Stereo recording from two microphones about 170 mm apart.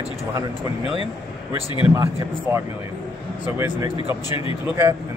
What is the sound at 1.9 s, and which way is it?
Speech, 15° right (ahead or behind).